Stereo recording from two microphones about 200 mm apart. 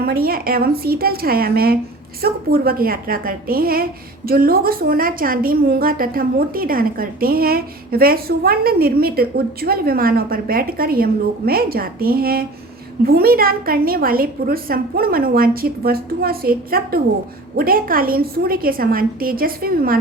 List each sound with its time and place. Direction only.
0.0 s a woman's voice: 50° right (ahead or behind)